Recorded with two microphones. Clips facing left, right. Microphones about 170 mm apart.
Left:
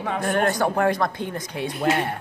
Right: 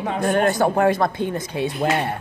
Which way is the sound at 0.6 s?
20° right (ahead or behind).